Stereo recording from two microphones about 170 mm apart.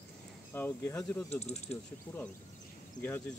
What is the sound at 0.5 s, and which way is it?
Speech, 15° left (ahead or behind).